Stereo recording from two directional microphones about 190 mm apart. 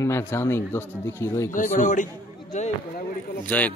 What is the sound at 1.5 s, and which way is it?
A man's voice, 40° left (ahead or behind).